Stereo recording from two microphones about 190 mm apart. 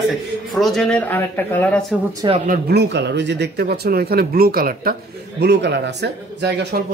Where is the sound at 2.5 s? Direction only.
60° right (ahead or behind).